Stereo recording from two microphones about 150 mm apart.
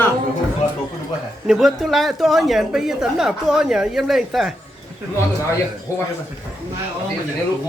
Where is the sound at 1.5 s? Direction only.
Centre (ahead or behind).